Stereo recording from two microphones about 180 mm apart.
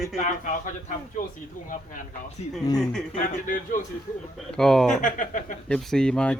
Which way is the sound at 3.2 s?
50° left (ahead or behind).